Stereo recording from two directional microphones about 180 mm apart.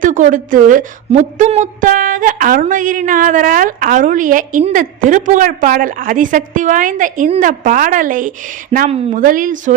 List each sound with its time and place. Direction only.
0.0 s a woman's voice: 45° right (ahead or behind)